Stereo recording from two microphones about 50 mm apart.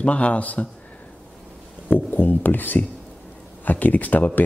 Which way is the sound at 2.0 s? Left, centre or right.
Left.